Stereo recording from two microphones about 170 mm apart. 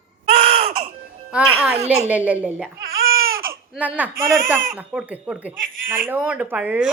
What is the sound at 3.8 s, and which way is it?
Speech, 10° right (ahead or behind).